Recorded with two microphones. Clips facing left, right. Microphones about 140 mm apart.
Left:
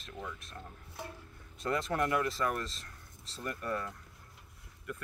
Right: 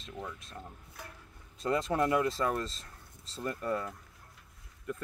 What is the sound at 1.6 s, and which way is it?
Speech, 25° right (ahead or behind).